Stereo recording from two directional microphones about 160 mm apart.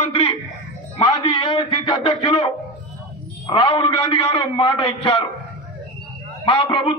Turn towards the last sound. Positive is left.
turn(degrees=30)  # may be behind; listen again after turning